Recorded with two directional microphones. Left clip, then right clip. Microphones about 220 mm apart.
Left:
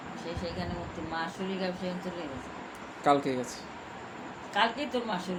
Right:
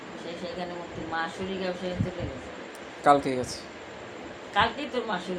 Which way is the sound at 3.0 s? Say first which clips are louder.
Right 5 dB; 10° right (ahead or behind).